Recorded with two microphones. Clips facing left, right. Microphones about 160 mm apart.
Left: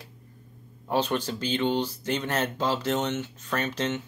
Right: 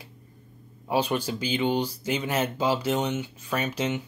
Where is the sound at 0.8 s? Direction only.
10° right (ahead or behind).